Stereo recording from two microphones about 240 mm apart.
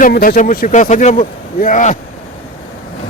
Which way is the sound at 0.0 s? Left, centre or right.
Left.